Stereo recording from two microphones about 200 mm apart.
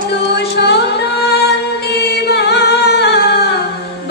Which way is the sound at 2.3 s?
55° left (ahead or behind).